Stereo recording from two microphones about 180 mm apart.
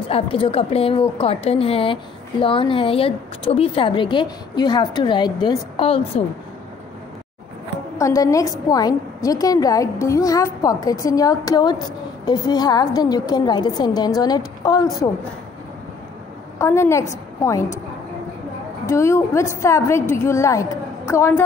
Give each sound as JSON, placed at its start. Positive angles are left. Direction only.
{"t": 0.1, "sound": "a woman's voice", "side_deg": 30}
{"t": 8.0, "sound": "a woman's voice", "side_deg": 15}
{"t": 16.5, "sound": "a woman's voice", "side_deg": 15}
{"t": 18.9, "sound": "a woman's voice", "side_deg": 15}